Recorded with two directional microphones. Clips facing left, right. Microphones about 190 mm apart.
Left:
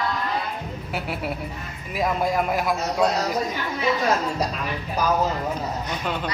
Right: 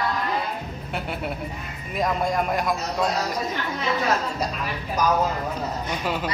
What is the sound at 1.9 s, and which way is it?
Speech, 5° left (ahead or behind).